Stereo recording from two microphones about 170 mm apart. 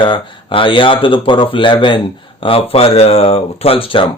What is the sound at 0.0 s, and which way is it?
Speech, 30° left (ahead or behind).